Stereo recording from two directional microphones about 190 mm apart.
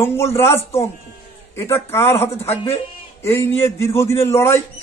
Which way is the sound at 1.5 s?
15° left (ahead or behind).